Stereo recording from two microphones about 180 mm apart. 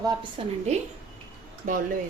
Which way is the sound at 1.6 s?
45° right (ahead or behind).